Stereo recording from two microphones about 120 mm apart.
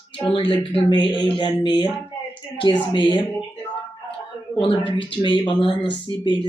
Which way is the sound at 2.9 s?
45° left (ahead or behind).